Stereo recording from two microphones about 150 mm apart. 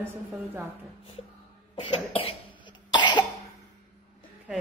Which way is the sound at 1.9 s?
40° left (ahead or behind).